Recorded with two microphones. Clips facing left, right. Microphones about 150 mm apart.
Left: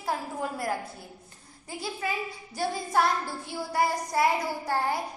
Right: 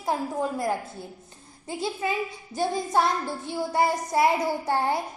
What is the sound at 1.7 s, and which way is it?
A woman's voice, 25° right (ahead or behind).